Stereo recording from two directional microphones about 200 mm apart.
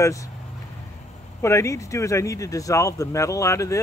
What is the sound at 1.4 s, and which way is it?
Speech, 15° left (ahead or behind).